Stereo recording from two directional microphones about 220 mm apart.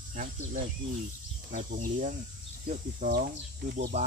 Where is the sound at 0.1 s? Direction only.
35° right (ahead or behind).